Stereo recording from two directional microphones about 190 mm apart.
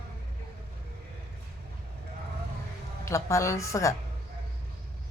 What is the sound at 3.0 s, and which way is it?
Speech, 15° left (ahead or behind).